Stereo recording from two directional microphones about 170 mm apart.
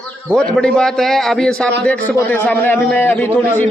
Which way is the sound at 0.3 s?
5° left (ahead or behind).